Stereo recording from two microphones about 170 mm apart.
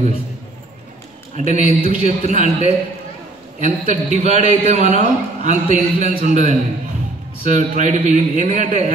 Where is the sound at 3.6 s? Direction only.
45° right (ahead or behind).